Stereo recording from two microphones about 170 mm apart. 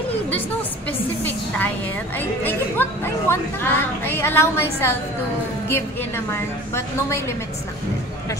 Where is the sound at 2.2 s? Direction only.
10° left (ahead or behind).